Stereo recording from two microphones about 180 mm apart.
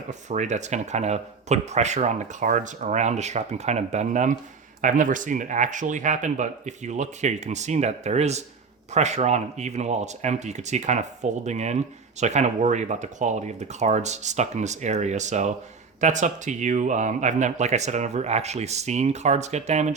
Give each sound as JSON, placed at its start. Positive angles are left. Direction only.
{"t": 0.1, "sound": "speech", "side_deg": -40}